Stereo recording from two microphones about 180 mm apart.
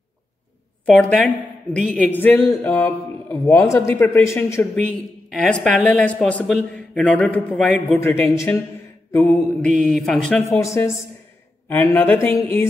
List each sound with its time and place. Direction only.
0.8 s a woman's voice: 5° left (ahead or behind)
10.5 s a woman's voice: 15° left (ahead or behind)